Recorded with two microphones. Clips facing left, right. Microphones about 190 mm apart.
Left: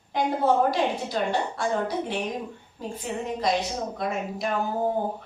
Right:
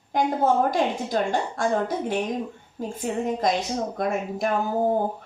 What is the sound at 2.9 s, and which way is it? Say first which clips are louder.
A woman's voice: right 4 dB; 45° right (ahead or behind).